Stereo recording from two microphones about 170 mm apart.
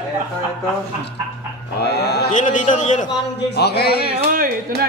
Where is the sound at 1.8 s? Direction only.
75° left (ahead or behind).